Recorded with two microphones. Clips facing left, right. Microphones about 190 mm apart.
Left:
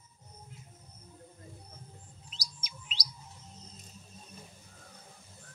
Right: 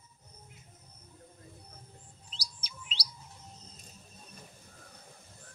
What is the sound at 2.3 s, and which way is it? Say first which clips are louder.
Chirp: right 2 dB; 30° right (ahead or behind).